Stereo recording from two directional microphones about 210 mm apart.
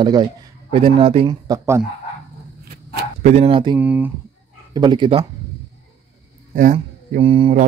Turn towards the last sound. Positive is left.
turn(degrees=-25)  # may be behind; listen again after turning